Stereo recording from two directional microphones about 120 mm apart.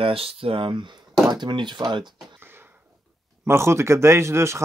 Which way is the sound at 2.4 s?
20° right (ahead or behind).